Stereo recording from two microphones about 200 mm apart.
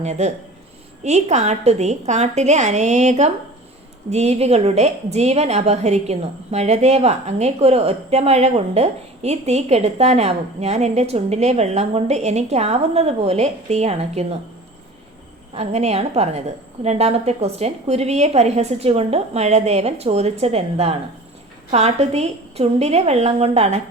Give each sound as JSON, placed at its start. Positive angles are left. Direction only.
{"t": 0.0, "sound": "a woman's voice", "side_deg": -35}
{"t": 15.5, "sound": "a woman's voice", "side_deg": -30}